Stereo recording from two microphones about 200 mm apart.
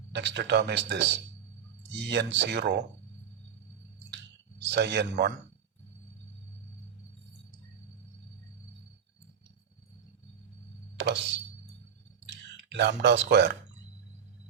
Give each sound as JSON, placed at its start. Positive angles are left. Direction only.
{"t": 0.1, "sound": "speech", "side_deg": -60}
{"t": 4.7, "sound": "speech", "side_deg": -55}
{"t": 10.9, "sound": "speech", "side_deg": -60}